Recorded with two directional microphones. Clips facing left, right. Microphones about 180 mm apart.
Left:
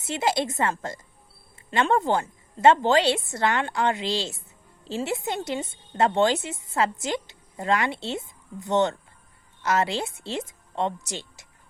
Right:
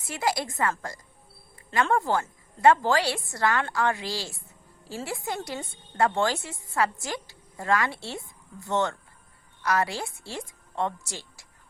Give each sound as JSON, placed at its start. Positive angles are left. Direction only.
{"t": 0.0, "sound": "a woman's voice", "side_deg": 25}